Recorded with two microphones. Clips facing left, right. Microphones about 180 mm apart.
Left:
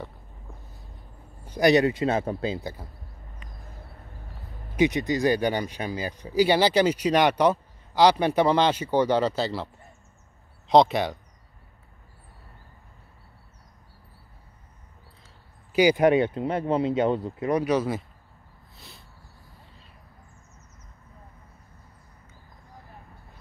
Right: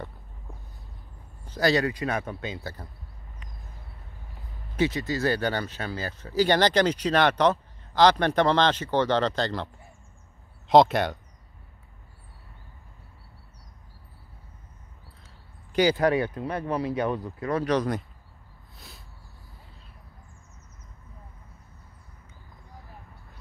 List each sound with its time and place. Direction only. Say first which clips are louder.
1.4 s speech: left 4 dB; 15° left (ahead or behind); by 2.6 s 30° left (ahead or behind)
2.6 s speech: left 2 dB; 10° left (ahead or behind)
4.7 s speech: left 3 dB; 20° left (ahead or behind)
10.7 s speech: even; centre (ahead or behind)
15.7 s speech: left 3 dB; 15° left (ahead or behind)
17.6 s speech: left 1 dB; 5° left (ahead or behind)
18.8 s a sound: even; centre (ahead or behind)